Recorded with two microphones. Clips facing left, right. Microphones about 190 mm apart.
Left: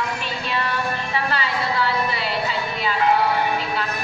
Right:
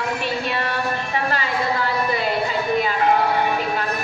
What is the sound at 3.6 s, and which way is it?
Music, 50° right (ahead or behind).